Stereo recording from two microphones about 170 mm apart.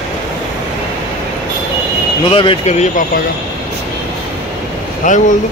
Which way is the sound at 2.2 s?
30° left (ahead or behind).